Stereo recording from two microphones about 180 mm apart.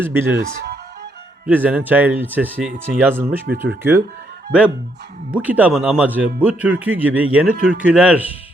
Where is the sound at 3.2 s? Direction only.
60° right (ahead or behind).